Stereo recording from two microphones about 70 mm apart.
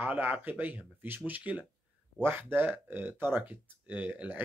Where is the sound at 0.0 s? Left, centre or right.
Right.